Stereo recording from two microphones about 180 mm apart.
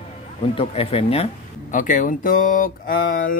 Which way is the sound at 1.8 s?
45° left (ahead or behind).